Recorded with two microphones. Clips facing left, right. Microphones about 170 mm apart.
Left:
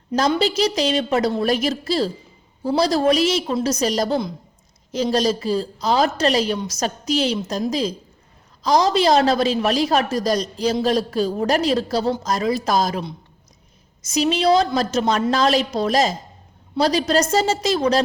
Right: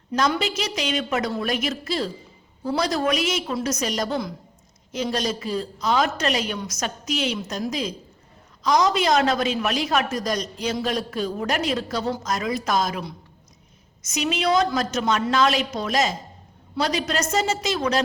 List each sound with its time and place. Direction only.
0.2 s a woman's voice: 35° left (ahead or behind)